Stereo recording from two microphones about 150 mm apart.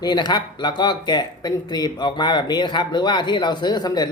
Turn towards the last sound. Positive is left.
turn(degrees=30)  # may be behind; listen again after turning